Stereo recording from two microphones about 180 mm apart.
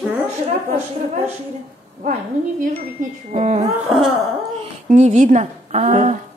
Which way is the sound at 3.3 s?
40° right (ahead or behind).